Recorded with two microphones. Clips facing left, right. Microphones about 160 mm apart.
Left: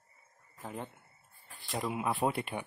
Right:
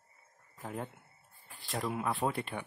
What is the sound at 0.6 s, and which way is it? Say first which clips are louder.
Speech: right 1 dB; centre (ahead or behind).